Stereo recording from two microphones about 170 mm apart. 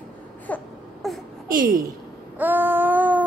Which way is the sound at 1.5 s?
55° right (ahead or behind).